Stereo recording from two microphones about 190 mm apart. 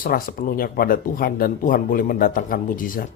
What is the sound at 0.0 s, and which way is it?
Speech, 45° left (ahead or behind).